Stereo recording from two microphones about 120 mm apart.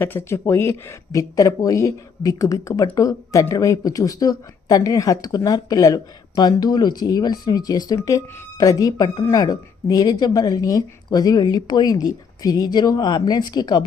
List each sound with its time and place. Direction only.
0.0 s speech: 20° left (ahead or behind); by 13.8 s 35° left (ahead or behind)